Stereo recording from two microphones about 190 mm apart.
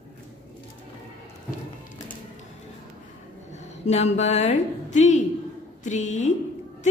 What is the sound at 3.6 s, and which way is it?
A woman's voice, 35° left (ahead or behind).